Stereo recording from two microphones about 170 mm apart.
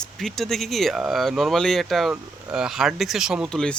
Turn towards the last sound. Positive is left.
turn(degrees=5)  # may be behind; listen again after turning